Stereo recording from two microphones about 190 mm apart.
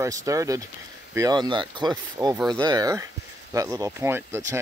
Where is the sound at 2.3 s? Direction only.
Centre (ahead or behind).